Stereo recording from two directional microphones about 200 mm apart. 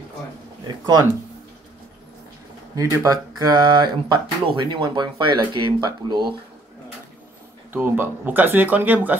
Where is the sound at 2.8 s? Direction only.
20° right (ahead or behind).